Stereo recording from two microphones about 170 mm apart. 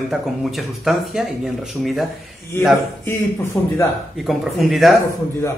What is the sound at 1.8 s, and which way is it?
Speech, centre (ahead or behind).